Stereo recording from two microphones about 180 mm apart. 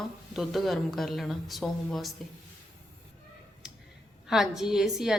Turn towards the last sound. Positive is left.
turn(degrees=0)  # may be behind; listen again after turning